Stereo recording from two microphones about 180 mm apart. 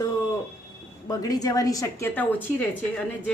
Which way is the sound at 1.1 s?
20° left (ahead or behind).